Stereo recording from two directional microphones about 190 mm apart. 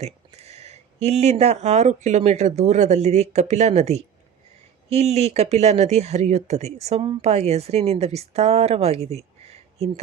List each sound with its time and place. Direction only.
0.0 s speech: 35° right (ahead or behind)